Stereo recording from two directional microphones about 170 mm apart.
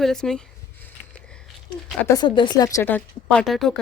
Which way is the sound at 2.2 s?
30° left (ahead or behind).